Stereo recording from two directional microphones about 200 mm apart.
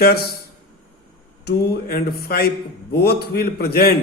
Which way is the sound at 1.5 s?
50° left (ahead or behind).